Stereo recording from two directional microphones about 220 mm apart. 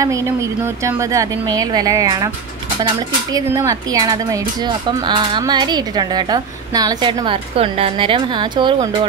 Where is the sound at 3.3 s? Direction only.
15° right (ahead or behind).